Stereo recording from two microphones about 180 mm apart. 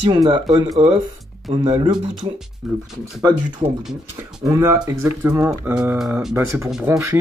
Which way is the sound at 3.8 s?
15° right (ahead or behind).